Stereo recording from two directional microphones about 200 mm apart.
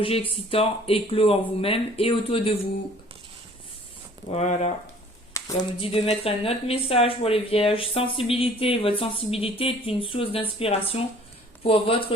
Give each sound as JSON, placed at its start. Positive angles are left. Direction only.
{"t": 0.0, "sound": "speech", "side_deg": 25}
{"t": 4.3, "sound": "speech", "side_deg": 35}
{"t": 5.3, "sound": "a sound", "side_deg": 15}
{"t": 5.8, "sound": "speech", "side_deg": 30}